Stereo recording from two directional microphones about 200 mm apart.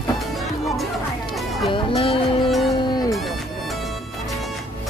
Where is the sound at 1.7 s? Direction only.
30° left (ahead or behind).